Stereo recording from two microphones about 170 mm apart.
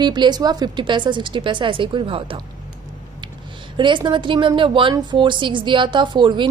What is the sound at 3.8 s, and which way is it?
A woman's voice, 30° right (ahead or behind).